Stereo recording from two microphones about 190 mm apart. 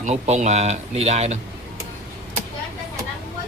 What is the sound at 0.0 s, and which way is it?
Speech, 40° right (ahead or behind).